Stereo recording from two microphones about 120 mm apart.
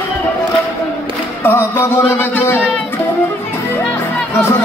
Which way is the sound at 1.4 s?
20° left (ahead or behind).